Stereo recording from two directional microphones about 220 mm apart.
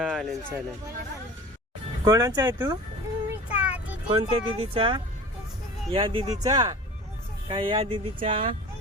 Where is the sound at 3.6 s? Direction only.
5° right (ahead or behind).